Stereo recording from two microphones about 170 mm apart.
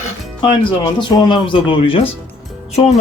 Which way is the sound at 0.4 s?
30° left (ahead or behind).